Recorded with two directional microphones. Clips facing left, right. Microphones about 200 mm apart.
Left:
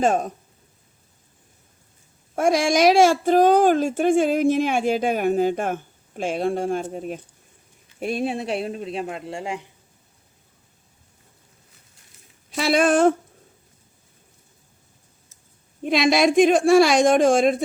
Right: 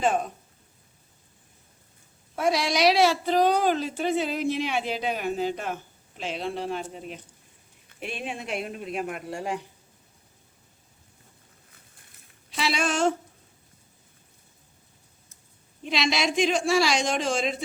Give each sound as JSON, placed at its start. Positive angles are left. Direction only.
{"t": 0.0, "sound": "a woman's voice", "side_deg": 45}
{"t": 2.3, "sound": "a woman's voice", "side_deg": 50}
{"t": 12.5, "sound": "a woman's voice", "side_deg": 50}
{"t": 15.8, "sound": "a woman's voice", "side_deg": 50}